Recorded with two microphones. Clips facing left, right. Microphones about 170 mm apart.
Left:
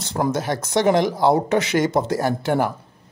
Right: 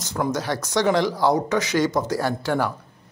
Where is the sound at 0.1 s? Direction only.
30° left (ahead or behind).